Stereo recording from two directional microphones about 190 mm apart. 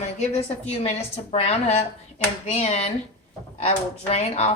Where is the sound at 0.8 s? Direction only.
35° left (ahead or behind).